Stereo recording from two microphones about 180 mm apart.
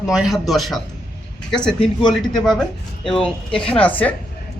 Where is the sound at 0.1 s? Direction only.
5° right (ahead or behind).